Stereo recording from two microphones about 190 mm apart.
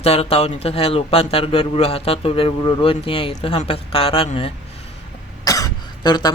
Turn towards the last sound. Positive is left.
turn(degrees=20)  # may be behind; listen again after turning